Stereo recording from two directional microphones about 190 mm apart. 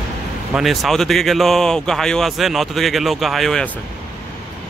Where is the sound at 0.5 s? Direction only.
Centre (ahead or behind).